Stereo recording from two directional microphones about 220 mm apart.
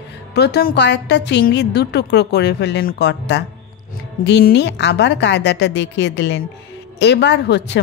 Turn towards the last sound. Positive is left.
turn(degrees=50)  # may be behind; listen again after turning